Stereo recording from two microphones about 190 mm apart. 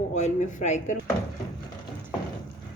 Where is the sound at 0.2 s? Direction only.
35° left (ahead or behind).